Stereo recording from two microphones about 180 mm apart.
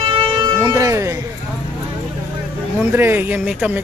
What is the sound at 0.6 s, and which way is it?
Speech, 20° right (ahead or behind).